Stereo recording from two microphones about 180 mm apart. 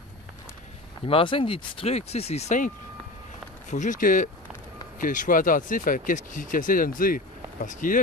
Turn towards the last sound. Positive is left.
turn(degrees=50)  # may be behind; listen again after turning